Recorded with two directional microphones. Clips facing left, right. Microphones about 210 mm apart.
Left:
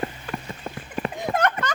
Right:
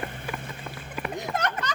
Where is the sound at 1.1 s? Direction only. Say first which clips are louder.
Left 5 dB; 55° left (ahead or behind).